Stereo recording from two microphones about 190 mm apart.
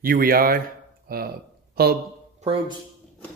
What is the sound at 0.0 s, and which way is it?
A man's voice, 50° right (ahead or behind).